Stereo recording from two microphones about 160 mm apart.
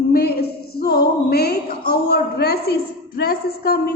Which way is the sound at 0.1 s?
75° left (ahead or behind).